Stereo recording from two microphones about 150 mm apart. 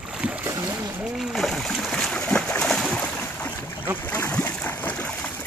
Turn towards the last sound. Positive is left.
turn(degrees=10)  # may be behind; listen again after turning